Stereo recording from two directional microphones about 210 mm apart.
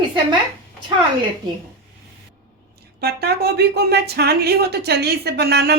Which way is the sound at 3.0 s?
50° right (ahead or behind).